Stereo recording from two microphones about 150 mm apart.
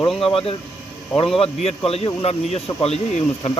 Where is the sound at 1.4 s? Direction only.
40° left (ahead or behind).